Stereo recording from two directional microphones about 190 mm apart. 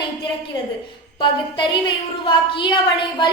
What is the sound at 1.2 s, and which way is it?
A woman's voice, 25° left (ahead or behind).